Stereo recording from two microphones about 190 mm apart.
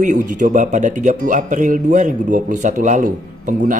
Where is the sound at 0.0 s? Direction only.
40° right (ahead or behind).